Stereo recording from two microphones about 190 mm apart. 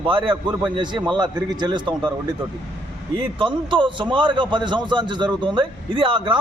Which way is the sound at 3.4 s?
25° right (ahead or behind).